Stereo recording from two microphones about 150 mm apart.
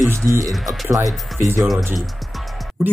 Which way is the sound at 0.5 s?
Centre (ahead or behind).